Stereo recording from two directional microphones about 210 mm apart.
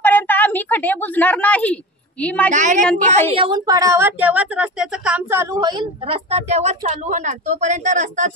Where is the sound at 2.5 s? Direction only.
35° right (ahead or behind).